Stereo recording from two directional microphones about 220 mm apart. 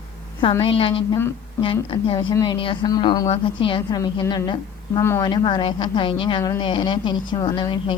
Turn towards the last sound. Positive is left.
turn(degrees=20)  # may be behind; listen again after turning